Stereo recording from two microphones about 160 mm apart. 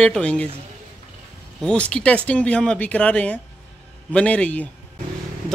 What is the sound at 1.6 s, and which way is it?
Speech, 5° left (ahead or behind).